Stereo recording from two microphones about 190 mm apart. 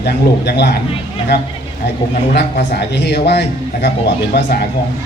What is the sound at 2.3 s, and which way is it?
A man's voice, 60° left (ahead or behind).